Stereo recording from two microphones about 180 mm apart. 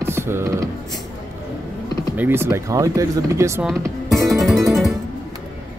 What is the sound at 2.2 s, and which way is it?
Speech, 10° right (ahead or behind).